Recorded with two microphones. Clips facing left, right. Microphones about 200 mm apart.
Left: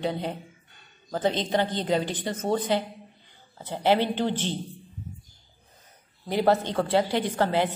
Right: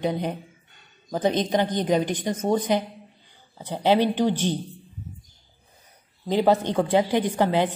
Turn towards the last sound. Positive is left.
turn(degrees=-15)  # may be behind; listen again after turning